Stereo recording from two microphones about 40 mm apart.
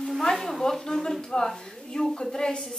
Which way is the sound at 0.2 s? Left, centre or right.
Centre.